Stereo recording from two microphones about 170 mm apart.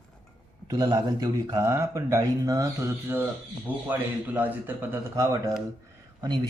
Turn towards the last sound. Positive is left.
turn(degrees=-25)  # may be behind; listen again after turning